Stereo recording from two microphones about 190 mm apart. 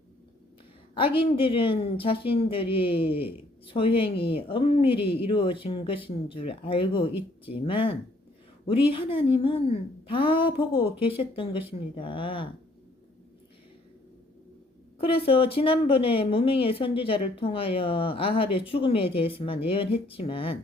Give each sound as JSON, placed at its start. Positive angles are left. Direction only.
{"t": 0.9, "sound": "speech", "side_deg": 25}
{"t": 14.9, "sound": "speech", "side_deg": 30}